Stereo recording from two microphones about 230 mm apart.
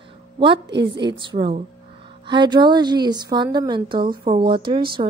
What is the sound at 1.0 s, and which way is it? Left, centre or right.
A woman's voice, right.